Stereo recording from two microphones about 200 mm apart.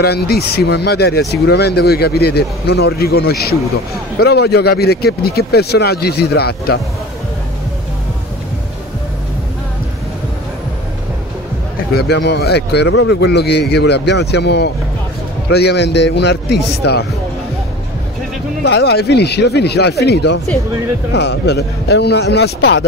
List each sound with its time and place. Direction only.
0.0 s speech: 50° left (ahead or behind)
11.9 s a man's voice: 55° left (ahead or behind)
18.6 s a man's voice: 55° left (ahead or behind)